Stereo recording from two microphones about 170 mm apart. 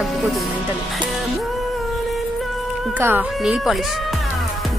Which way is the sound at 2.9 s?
10° right (ahead or behind).